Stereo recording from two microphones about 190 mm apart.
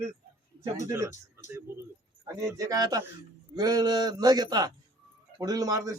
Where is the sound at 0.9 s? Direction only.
15° right (ahead or behind).